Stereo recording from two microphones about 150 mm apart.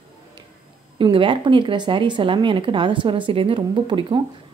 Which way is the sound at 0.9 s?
35° right (ahead or behind).